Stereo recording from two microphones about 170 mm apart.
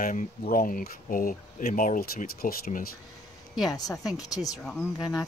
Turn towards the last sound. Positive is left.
turn(degrees=25)  # may be behind; listen again after turning